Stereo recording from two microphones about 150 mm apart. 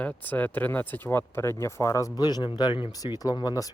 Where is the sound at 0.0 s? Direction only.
10° left (ahead or behind).